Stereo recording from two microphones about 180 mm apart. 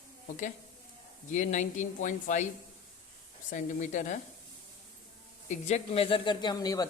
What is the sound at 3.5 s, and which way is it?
Speech, 45° left (ahead or behind).